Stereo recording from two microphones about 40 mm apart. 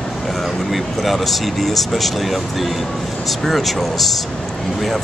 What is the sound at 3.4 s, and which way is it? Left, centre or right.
Speech, centre.